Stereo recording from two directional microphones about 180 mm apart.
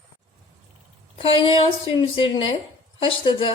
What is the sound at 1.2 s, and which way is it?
A woman's voice, 30° left (ahead or behind).